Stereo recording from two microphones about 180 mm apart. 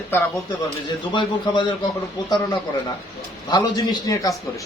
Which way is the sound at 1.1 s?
25° left (ahead or behind).